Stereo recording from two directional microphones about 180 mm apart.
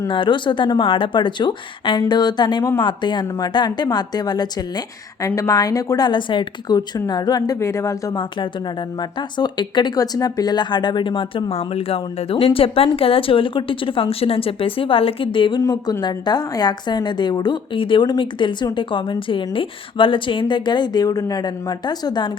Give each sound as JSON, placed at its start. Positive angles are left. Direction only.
{"t": 0.1, "sound": "speech", "side_deg": 25}